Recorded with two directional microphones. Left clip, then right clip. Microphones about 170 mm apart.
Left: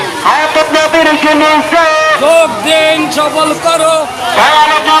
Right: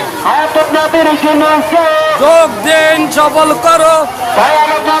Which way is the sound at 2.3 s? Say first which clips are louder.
Even; 35° right (ahead or behind).